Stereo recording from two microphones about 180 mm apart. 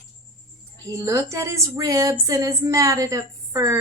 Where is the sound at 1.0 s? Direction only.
15° right (ahead or behind).